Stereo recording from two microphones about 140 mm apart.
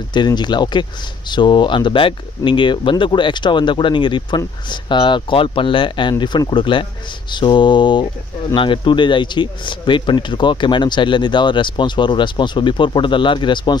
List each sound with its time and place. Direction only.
0.1 s speech: 30° left (ahead or behind)